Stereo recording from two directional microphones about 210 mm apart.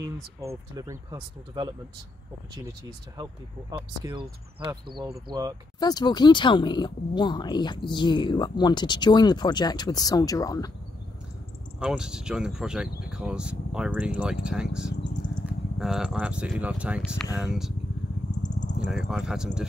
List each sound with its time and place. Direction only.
0.0 s speech: 15° right (ahead or behind)
3.7 s speech: 20° right (ahead or behind)
5.8 s speech: 20° left (ahead or behind)
11.8 s speech: 5° right (ahead or behind)
18.6 s a sound: 35° left (ahead or behind)
18.9 s speech: centre (ahead or behind)